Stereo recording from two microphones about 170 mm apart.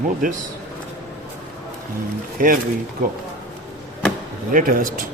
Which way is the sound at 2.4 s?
55° right (ahead or behind).